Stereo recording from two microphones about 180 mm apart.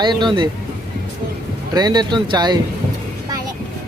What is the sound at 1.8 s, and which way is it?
Speech, 25° right (ahead or behind).